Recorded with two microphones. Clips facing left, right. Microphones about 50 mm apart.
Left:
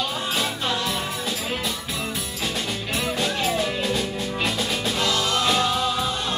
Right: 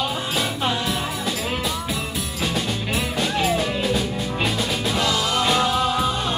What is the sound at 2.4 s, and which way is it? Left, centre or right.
Music, centre.